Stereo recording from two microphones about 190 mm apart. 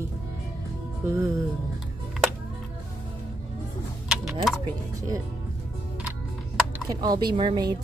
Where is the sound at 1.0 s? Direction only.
15° right (ahead or behind).